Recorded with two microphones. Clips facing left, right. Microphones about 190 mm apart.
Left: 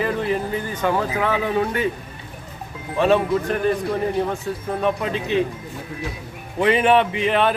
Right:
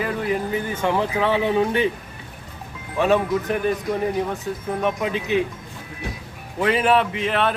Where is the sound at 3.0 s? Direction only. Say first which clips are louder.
Left 1 dB; 15° right (ahead or behind).